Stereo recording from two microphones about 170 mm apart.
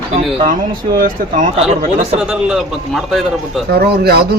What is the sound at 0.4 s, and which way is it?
A man's voice, 55° right (ahead or behind).